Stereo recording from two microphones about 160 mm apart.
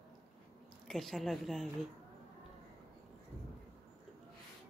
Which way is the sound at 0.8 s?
Centre (ahead or behind).